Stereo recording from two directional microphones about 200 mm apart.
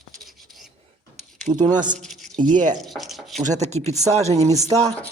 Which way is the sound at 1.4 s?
35° right (ahead or behind).